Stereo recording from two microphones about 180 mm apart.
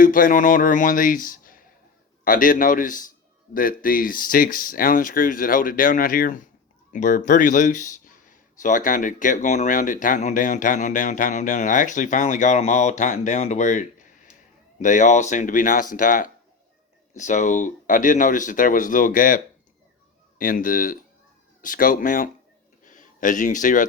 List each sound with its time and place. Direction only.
0.0 s speech: 50° left (ahead or behind)
20.4 s speech: 50° left (ahead or behind)
22.8 s a sound: 45° left (ahead or behind)